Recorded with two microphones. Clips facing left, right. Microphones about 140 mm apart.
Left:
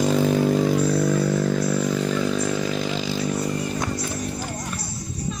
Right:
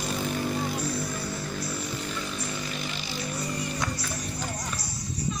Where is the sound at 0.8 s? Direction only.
55° left (ahead or behind); by 3.2 s 90° left.